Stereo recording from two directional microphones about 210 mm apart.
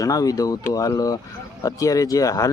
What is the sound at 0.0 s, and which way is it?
Speech, 15° left (ahead or behind).